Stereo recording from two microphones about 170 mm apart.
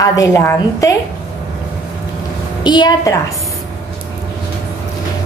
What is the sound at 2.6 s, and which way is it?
Speech, 25° left (ahead or behind).